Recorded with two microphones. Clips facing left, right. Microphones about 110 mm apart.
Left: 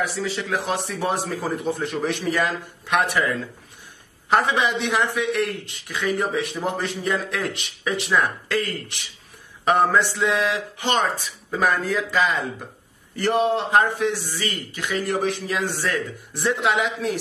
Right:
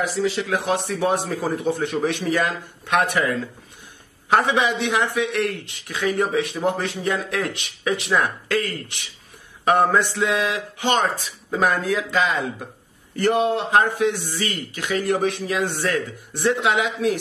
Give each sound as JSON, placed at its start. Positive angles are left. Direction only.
{"t": 0.0, "sound": "speech", "side_deg": -20}
{"t": 0.5, "sound": "a man's voice", "side_deg": 0}
{"t": 9.7, "sound": "a man's voice", "side_deg": 0}